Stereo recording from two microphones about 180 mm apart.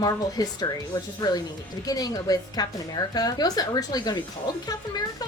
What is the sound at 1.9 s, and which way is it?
Speech, 20° left (ahead or behind).